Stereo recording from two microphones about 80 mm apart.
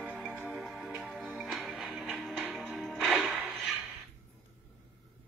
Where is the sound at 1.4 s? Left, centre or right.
Centre.